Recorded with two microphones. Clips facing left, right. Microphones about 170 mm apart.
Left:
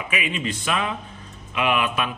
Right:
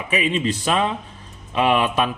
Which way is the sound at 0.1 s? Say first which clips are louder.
Right 7 dB; 35° right (ahead or behind).